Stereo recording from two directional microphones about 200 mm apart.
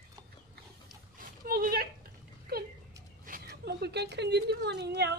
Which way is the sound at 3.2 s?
50° right (ahead or behind).